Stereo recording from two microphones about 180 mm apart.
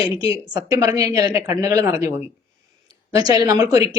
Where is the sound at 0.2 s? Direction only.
20° right (ahead or behind).